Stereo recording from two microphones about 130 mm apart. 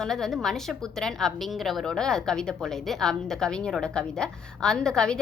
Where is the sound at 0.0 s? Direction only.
5° left (ahead or behind).